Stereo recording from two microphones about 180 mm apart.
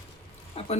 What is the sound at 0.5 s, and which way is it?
Speech, 35° left (ahead or behind).